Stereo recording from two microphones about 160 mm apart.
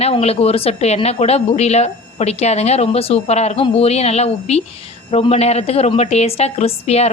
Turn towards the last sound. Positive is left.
turn(degrees=40)  # may be behind; listen again after turning